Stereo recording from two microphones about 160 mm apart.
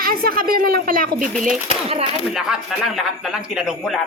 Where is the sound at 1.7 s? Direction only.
40° right (ahead or behind).